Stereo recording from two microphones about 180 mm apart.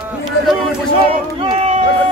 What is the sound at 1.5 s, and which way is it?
Run, 35° right (ahead or behind).